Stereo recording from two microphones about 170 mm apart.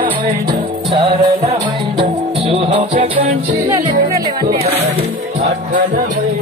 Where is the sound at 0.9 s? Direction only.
30° right (ahead or behind).